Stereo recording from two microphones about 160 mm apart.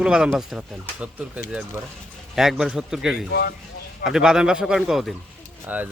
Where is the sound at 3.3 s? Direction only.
90° left.